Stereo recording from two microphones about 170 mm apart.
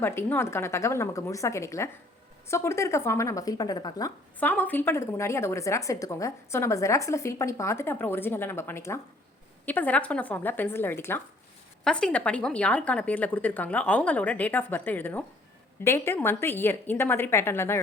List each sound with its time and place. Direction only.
0.0 s a woman's voice: 15° left (ahead or behind)
4.4 s a woman's voice: 10° left (ahead or behind)